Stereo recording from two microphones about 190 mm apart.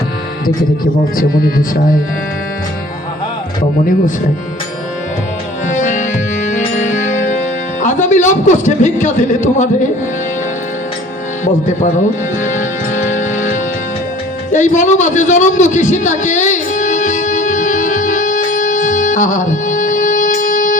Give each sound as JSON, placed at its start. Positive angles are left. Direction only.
{"t": 1.1, "sound": "speech", "side_deg": 45}
{"t": 5.6, "sound": "music", "side_deg": 40}
{"t": 11.4, "sound": "speech", "side_deg": 40}
{"t": 12.4, "sound": "music", "side_deg": 40}
{"t": 14.5, "sound": "a sound", "side_deg": 40}